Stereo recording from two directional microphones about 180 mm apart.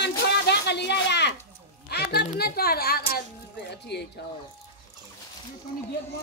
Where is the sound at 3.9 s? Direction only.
65° left (ahead or behind).